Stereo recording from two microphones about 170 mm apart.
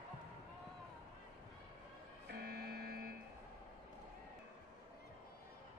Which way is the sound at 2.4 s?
65° right (ahead or behind).